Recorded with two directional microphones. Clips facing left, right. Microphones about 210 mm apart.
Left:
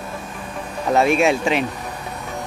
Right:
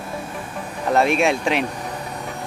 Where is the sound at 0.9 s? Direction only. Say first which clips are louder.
Left 2 dB; centre (ahead or behind).